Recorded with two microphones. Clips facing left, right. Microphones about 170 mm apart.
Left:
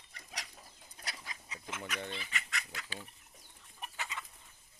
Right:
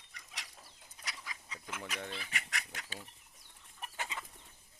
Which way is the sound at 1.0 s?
30° left (ahead or behind).